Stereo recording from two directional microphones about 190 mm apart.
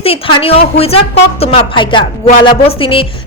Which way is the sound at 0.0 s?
30° left (ahead or behind).